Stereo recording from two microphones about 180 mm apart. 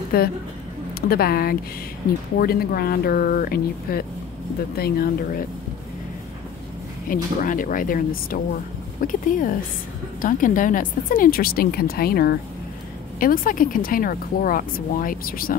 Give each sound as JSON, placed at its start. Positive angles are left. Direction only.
{"t": 0.1, "sound": "speech", "side_deg": 60}
{"t": 7.1, "sound": "speech", "side_deg": 50}